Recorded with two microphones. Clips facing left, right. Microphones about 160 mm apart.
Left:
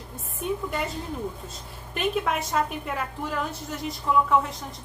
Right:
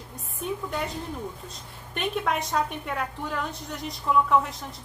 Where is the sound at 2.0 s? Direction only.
Centre (ahead or behind).